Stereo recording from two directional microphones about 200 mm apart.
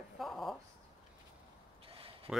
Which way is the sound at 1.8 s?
30° right (ahead or behind).